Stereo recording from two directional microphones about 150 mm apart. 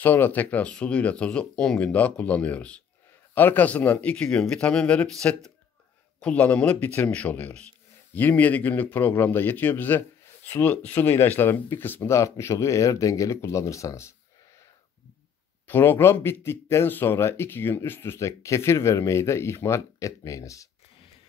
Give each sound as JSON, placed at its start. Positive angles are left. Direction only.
{"t": 0.0, "sound": "speech", "side_deg": 10}
{"t": 15.6, "sound": "speech", "side_deg": 15}